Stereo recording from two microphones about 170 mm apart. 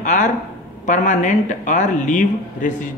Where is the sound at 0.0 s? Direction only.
45° left (ahead or behind).